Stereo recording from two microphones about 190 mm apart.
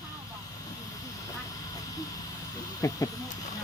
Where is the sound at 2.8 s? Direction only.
20° left (ahead or behind).